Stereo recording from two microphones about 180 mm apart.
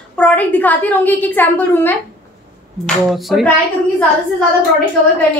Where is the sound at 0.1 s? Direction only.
5° left (ahead or behind).